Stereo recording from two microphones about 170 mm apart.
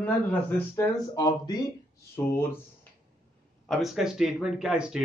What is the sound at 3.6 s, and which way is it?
A man's voice, centre (ahead or behind).